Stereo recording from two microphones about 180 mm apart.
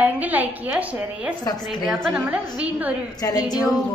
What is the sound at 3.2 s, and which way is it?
Speech, 20° left (ahead or behind).